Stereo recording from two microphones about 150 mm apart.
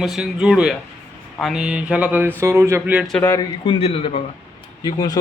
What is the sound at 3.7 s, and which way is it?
Speech, 40° left (ahead or behind).